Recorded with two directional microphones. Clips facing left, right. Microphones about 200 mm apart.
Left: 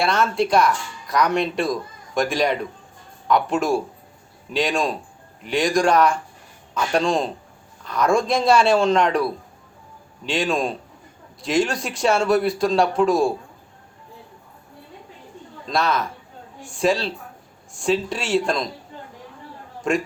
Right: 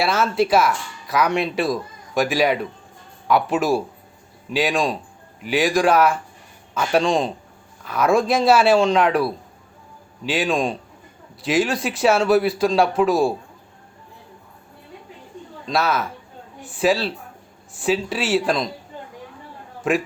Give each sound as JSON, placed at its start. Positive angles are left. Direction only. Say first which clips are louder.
{"t": 0.0, "sound": "speech", "louder": "right 1 dB", "side_deg": -5}
{"t": 15.7, "sound": "speech", "louder": "right 1 dB", "side_deg": -5}
{"t": 19.9, "sound": "speech", "louder": "right 1 dB", "side_deg": -5}